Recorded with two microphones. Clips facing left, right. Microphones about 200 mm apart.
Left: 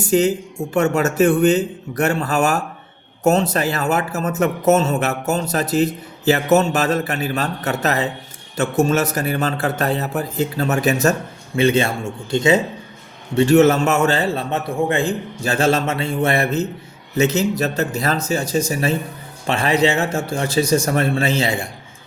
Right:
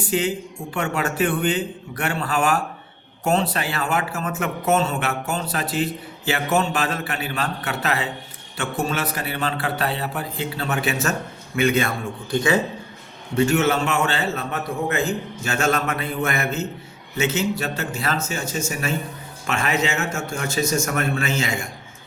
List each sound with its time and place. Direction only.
0.0 s a man's voice: 40° left (ahead or behind); by 12.5 s 20° left (ahead or behind)
13.3 s speech: 35° left (ahead or behind)